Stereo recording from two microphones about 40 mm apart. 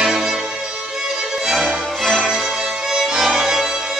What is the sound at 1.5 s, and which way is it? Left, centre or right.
Music, centre.